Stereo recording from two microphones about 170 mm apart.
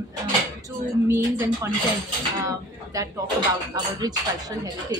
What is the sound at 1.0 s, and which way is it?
Speech, 15° right (ahead or behind).